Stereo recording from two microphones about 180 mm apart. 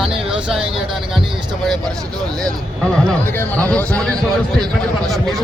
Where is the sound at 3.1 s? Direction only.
10° left (ahead or behind).